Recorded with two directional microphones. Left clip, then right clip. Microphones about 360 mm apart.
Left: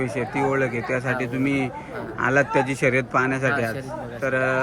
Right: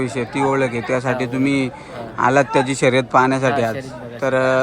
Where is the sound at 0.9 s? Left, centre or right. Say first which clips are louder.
Right 5 dB; centre.